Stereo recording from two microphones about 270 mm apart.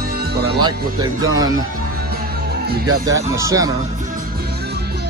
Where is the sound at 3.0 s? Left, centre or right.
Centre.